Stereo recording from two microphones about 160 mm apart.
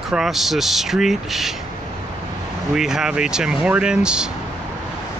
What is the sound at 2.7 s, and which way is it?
Speech, 5° right (ahead or behind).